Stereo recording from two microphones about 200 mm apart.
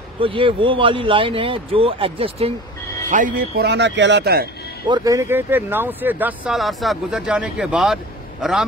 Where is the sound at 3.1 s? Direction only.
45° right (ahead or behind).